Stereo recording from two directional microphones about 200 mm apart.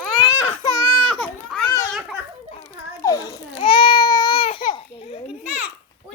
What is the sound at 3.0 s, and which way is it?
Babbling, 15° left (ahead or behind).